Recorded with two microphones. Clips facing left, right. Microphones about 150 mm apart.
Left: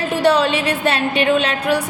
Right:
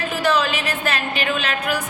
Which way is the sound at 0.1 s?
30° left (ahead or behind).